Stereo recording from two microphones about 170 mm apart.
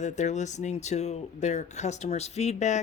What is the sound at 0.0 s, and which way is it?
Speech, 45° left (ahead or behind).